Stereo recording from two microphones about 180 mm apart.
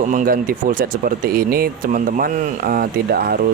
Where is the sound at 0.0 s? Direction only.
45° right (ahead or behind).